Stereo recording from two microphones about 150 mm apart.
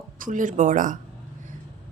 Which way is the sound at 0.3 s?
60° right (ahead or behind).